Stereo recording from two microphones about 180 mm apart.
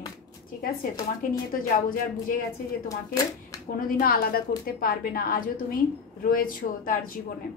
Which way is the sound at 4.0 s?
55° left (ahead or behind).